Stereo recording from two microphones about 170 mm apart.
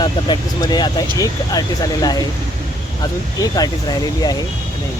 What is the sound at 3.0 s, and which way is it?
Speech, 20° left (ahead or behind).